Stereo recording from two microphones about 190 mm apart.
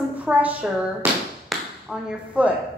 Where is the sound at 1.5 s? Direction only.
Centre (ahead or behind).